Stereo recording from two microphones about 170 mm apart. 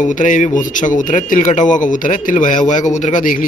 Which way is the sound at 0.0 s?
50° left (ahead or behind).